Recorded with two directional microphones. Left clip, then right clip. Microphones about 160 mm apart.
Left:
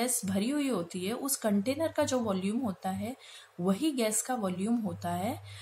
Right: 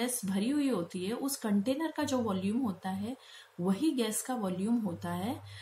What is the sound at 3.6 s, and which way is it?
Speech, 30° left (ahead or behind).